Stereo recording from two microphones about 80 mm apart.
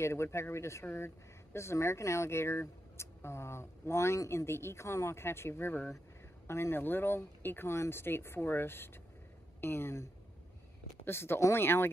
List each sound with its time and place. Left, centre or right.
0.0 s speech: left
11.1 s speech: left